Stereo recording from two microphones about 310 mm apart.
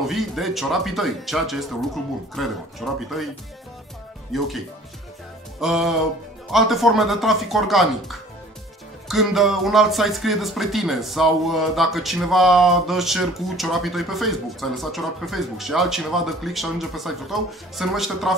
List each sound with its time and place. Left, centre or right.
0.0 s speech: centre
4.3 s speech: centre